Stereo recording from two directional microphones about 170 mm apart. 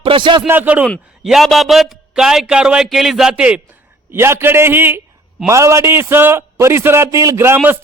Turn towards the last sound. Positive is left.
turn(degrees=-10)  # may be behind; listen again after turning